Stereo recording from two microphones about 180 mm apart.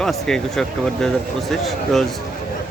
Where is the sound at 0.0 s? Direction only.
5° left (ahead or behind).